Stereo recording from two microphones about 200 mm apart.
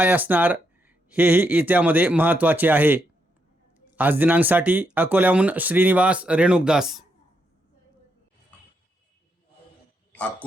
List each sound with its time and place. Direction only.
0.0 s speech: 10° right (ahead or behind)